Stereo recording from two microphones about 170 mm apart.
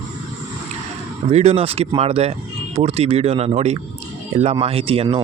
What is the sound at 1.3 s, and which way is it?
Speech, 40° right (ahead or behind).